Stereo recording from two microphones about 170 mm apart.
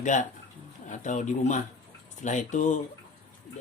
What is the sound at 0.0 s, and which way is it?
Speech, 45° left (ahead or behind).